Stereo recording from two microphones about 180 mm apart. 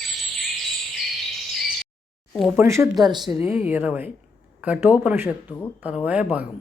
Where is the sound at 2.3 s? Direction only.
Centre (ahead or behind).